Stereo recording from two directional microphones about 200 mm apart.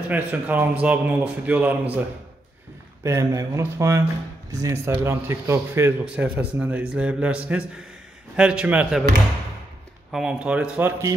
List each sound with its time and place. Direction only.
0.1 s a man's voice: 10° right (ahead or behind)
3.0 s a man's voice: 15° right (ahead or behind)
10.1 s speech: 5° right (ahead or behind)